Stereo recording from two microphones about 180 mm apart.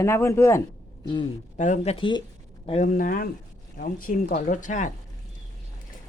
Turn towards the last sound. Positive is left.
turn(degrees=45)  # may be behind; listen again after turning